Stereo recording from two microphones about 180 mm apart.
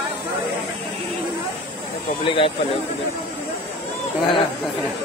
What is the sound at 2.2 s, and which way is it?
Speech, 30° left (ahead or behind).